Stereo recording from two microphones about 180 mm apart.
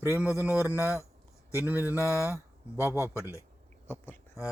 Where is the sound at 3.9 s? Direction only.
10° left (ahead or behind).